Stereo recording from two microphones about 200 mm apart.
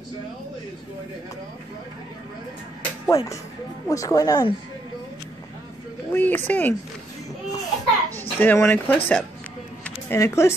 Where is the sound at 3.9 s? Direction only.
15° left (ahead or behind).